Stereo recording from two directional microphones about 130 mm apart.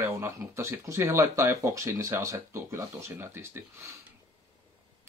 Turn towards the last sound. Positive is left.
turn(degrees=-20)  # may be behind; listen again after turning